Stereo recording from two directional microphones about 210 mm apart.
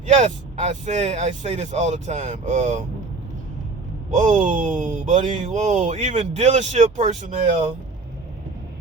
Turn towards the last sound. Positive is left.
turn(degrees=-35)  # may be behind; listen again after turning